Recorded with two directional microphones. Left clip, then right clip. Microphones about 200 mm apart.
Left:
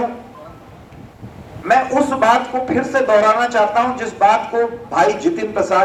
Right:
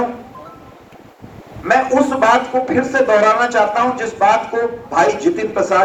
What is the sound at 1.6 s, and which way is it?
Speech, 60° left (ahead or behind).